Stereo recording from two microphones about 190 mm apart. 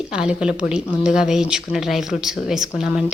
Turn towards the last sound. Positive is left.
turn(degrees=-5)  # may be behind; listen again after turning